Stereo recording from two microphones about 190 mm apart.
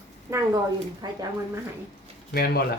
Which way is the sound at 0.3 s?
15° right (ahead or behind).